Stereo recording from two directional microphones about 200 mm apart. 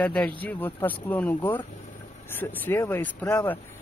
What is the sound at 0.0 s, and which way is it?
A man's voice, 5° left (ahead or behind).